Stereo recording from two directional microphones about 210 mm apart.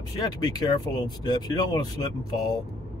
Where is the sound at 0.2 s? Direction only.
20° left (ahead or behind).